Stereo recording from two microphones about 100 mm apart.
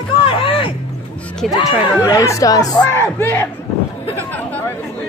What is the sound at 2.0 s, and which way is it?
Speech, 35° left (ahead or behind).